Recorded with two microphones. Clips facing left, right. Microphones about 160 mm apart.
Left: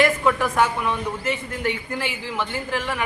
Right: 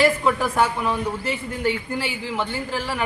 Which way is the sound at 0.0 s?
30° right (ahead or behind).